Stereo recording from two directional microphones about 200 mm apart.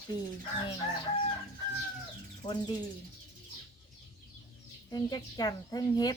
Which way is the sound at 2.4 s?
20° left (ahead or behind).